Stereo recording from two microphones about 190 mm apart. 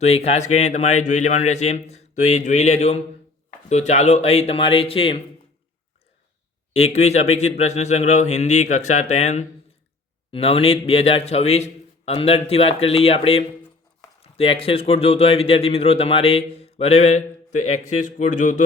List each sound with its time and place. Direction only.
0.0 s a man's voice: 35° left (ahead or behind)
6.7 s a man's voice: 35° left (ahead or behind)